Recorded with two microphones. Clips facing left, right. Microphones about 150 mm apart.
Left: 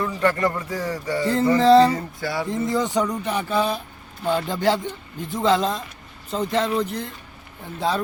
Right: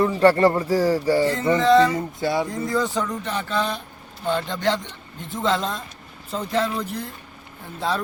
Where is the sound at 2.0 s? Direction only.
20° right (ahead or behind).